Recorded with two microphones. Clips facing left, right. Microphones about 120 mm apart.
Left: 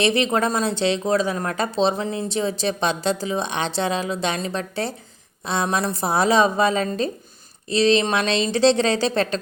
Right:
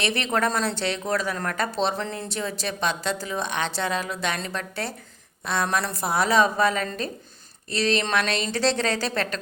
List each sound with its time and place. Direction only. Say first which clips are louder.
0.0 s speech: left 5 dB; 20° left (ahead or behind)